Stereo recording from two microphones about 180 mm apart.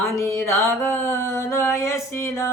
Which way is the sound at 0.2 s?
15° left (ahead or behind).